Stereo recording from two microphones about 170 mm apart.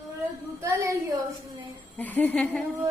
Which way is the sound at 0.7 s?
20° right (ahead or behind).